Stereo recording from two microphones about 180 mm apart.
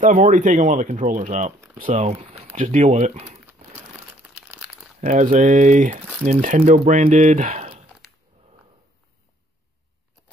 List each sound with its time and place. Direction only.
0.0 s speech: 45° right (ahead or behind)
2.0 s speech: 30° right (ahead or behind)
2.5 s speech: 45° right (ahead or behind)
5.0 s speech: 40° right (ahead or behind)